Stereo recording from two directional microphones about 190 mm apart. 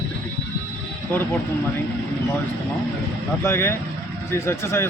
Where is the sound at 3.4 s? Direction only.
15° left (ahead or behind).